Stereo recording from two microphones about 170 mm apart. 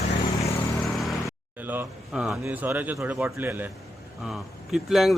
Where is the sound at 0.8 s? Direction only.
Centre (ahead or behind).